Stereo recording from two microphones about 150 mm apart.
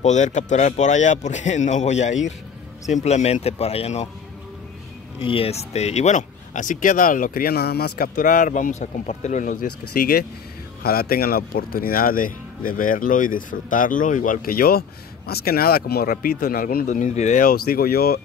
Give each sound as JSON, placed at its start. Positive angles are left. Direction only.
{"t": 0.0, "sound": "speech", "side_deg": 50}
{"t": 5.2, "sound": "speech", "side_deg": 40}